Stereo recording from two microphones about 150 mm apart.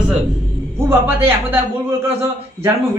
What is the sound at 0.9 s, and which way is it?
Speech, 15° right (ahead or behind).